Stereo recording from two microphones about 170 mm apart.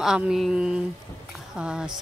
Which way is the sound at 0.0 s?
5° right (ahead or behind).